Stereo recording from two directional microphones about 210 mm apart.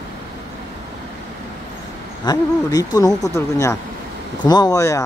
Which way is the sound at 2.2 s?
20° left (ahead or behind).